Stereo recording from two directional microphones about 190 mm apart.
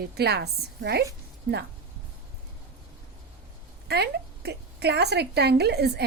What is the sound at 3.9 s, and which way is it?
A woman's voice, 60° right (ahead or behind).